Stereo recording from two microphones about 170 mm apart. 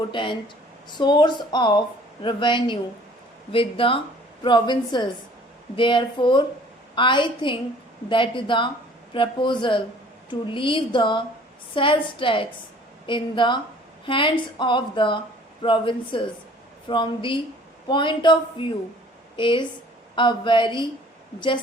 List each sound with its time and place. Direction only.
0.1 s a woman's voice: 30° left (ahead or behind)